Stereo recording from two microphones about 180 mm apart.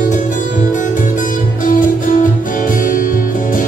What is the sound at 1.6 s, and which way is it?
Music, 50° left (ahead or behind).